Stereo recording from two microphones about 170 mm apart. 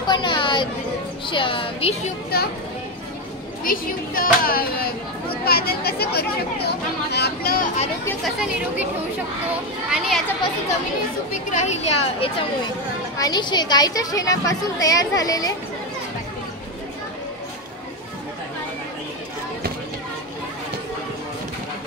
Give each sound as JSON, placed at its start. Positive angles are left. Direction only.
{"t": 0.0, "sound": "chatter", "side_deg": 25}
{"t": 1.3, "sound": "speech", "side_deg": 30}
{"t": 3.6, "sound": "speech", "side_deg": 55}
{"t": 8.2, "sound": "speech", "side_deg": -5}
{"t": 9.8, "sound": "speech", "side_deg": -5}
{"t": 11.5, "sound": "speech", "side_deg": 40}
{"t": 13.2, "sound": "a woman's voice", "side_deg": 25}